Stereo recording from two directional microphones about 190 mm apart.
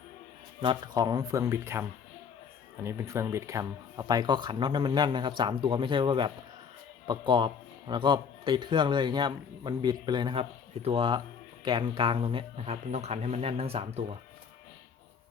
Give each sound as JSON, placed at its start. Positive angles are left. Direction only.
{"t": 0.6, "sound": "speech", "side_deg": -25}